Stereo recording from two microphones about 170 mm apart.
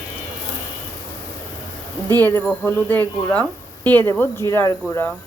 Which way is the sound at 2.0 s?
10° left (ahead or behind).